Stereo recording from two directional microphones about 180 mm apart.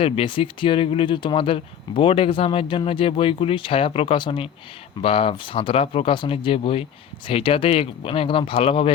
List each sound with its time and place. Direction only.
0.0 s speech: 30° left (ahead or behind)